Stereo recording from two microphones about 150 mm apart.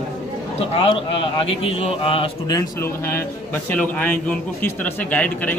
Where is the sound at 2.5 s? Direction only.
20° left (ahead or behind).